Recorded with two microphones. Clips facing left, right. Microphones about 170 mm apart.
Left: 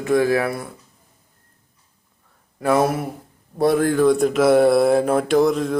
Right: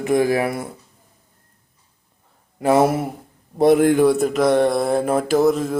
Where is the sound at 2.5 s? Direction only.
20° right (ahead or behind).